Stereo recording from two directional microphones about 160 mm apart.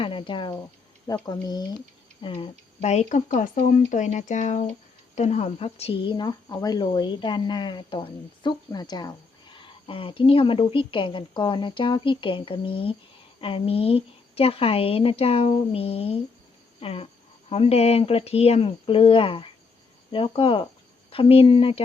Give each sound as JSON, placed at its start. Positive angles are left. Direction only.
{"t": 0.0, "sound": "speech", "side_deg": 30}